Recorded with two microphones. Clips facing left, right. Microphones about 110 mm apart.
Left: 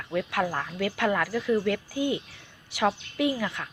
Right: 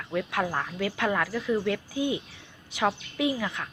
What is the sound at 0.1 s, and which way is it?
Speech, centre (ahead or behind).